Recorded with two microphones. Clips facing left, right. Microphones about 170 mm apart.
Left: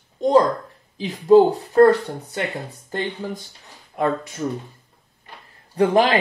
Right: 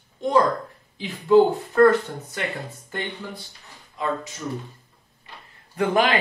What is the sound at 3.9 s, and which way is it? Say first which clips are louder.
Speech: left 5 dB; 55° left (ahead or behind).